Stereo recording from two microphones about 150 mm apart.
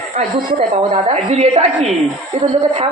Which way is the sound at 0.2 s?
50° right (ahead or behind).